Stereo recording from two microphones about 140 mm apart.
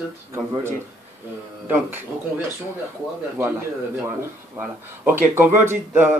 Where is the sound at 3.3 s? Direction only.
15° right (ahead or behind).